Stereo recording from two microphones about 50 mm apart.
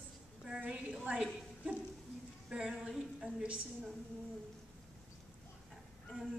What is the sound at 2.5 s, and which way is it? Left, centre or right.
Speech, right.